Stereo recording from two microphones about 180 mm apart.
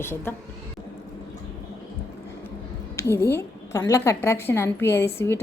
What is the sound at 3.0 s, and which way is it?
A woman's voice, 15° left (ahead or behind).